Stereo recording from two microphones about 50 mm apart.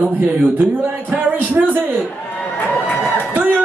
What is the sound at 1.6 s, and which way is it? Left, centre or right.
Speech, right.